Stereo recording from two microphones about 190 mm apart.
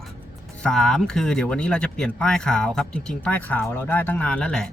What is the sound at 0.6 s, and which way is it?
Speech, 5° left (ahead or behind).